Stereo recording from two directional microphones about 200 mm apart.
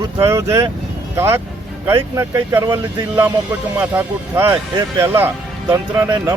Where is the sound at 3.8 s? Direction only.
10° right (ahead or behind).